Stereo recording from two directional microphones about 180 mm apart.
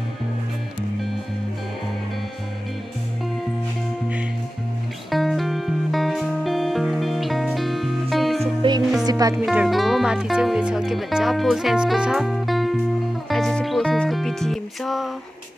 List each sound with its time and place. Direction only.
5.1 s music: centre (ahead or behind)
9.0 s music: 20° right (ahead or behind)
9.4 s speech: 5° right (ahead or behind)
13.3 s music: centre (ahead or behind)